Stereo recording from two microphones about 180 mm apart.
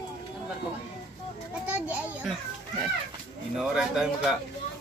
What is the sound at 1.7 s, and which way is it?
Speech, 10° right (ahead or behind).